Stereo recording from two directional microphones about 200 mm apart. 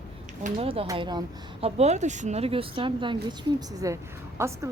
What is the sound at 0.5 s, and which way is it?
Speech, 25° right (ahead or behind).